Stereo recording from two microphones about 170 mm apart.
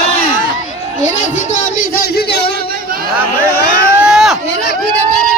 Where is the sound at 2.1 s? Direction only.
75° left (ahead or behind).